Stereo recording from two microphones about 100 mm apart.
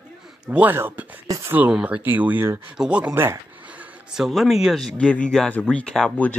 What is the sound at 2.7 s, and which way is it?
Speech, 10° right (ahead or behind).